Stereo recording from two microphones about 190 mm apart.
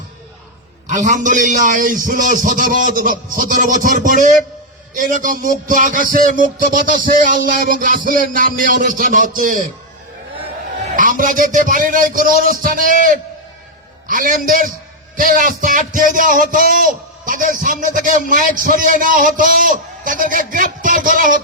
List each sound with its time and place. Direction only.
0.9 s a man's voice: 40° right (ahead or behind)
10.9 s a man's voice: 45° right (ahead or behind)